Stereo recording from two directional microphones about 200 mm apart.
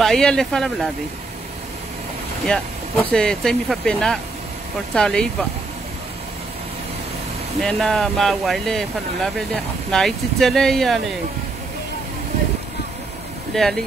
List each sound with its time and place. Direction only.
0.0 s speech: 5° left (ahead or behind)
2.4 s speech: 5° left (ahead or behind)
7.6 s speech: centre (ahead or behind)
13.6 s speech: centre (ahead or behind)